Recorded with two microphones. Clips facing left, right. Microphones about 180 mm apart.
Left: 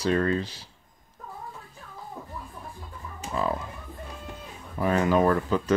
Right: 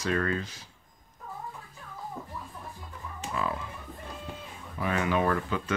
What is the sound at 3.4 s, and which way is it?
Speech, 35° left (ahead or behind).